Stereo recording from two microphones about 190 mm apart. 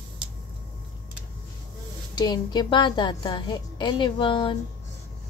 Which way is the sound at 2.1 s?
20° left (ahead or behind).